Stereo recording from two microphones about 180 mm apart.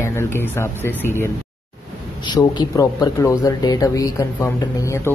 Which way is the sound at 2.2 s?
25° left (ahead or behind).